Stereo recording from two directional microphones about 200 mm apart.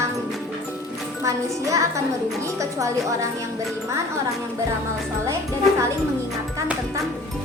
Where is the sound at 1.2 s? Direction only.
15° right (ahead or behind).